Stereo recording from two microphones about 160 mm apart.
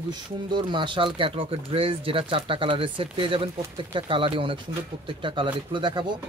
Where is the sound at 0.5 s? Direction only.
30° right (ahead or behind).